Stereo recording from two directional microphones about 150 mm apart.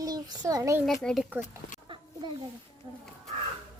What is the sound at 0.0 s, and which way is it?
Speech, 25° right (ahead or behind).